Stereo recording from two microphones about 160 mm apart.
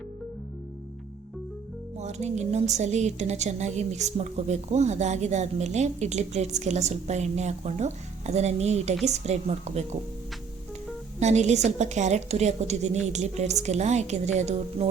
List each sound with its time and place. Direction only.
2.0 s a woman's voice: 45° right (ahead or behind)
11.2 s a woman's voice: 45° right (ahead or behind)